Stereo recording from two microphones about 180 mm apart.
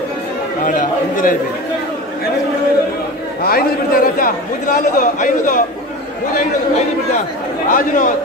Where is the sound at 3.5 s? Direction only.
55° left (ahead or behind).